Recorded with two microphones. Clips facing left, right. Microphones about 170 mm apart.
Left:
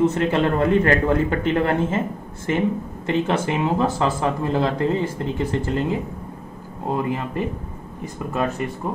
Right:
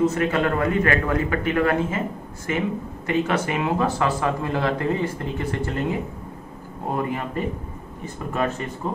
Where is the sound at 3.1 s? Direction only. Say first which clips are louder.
Left 1 dB; 25° left (ahead or behind).